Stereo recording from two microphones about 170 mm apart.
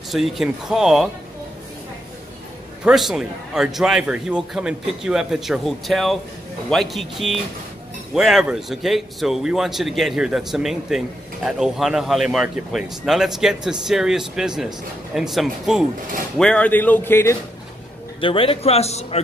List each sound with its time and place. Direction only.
0.1 s a man's voice: centre (ahead or behind)
2.8 s a man's voice: centre (ahead or behind); by 17.4 s 15° left (ahead or behind)
18.2 s a man's voice: 30° left (ahead or behind)